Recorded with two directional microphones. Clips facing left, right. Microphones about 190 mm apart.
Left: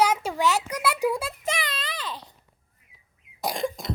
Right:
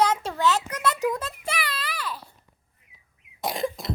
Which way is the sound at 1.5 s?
20° left (ahead or behind).